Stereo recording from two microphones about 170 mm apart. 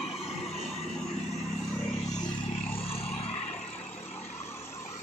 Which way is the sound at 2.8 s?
35° left (ahead or behind).